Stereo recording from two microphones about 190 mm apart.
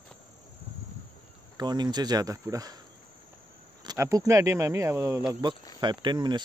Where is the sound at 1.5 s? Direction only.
20° right (ahead or behind).